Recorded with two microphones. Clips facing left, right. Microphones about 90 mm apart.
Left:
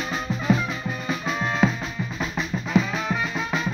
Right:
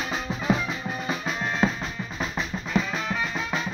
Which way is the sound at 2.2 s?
Centre (ahead or behind).